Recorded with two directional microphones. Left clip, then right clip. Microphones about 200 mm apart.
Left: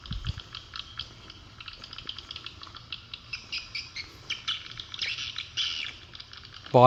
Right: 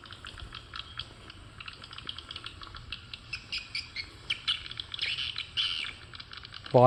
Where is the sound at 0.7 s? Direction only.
55° right (ahead or behind).